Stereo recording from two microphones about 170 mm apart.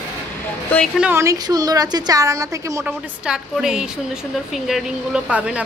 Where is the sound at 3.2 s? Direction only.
5° right (ahead or behind).